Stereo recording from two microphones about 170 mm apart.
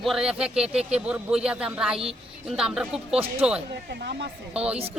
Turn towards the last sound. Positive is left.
turn(degrees=-5)  # may be behind; listen again after turning